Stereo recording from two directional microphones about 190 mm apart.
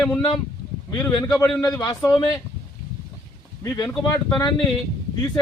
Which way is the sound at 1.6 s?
15° left (ahead or behind).